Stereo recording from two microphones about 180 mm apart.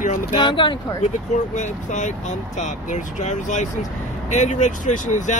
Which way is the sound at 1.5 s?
40° left (ahead or behind).